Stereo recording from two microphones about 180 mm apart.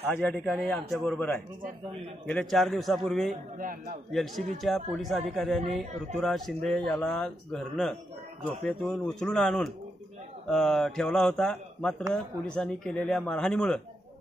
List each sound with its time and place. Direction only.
0.1 s a man's voice: 10° left (ahead or behind)
3.5 s a man's voice: 45° right (ahead or behind)
4.1 s a man's voice: centre (ahead or behind)